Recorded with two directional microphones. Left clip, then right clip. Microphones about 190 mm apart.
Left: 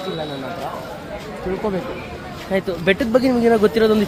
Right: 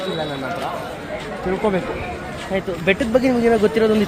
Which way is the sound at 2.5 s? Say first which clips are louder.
Left 1 dB; 20° left (ahead or behind).